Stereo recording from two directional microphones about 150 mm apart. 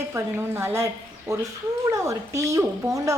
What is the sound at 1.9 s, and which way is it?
A woman's voice, 20° right (ahead or behind).